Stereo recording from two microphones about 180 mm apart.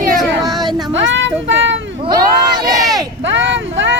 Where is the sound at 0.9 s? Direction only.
90° right.